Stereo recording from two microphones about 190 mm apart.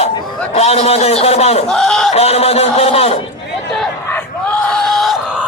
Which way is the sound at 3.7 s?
Centre (ahead or behind).